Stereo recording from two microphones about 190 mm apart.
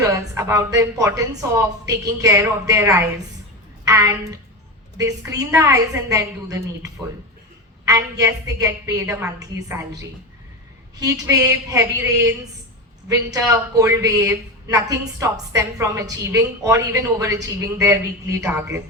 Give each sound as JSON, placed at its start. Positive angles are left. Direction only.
{"t": 0.0, "sound": "a woman's voice", "side_deg": -15}
{"t": 5.4, "sound": "a woman's voice", "side_deg": -15}
{"t": 11.0, "sound": "a woman's voice", "side_deg": -20}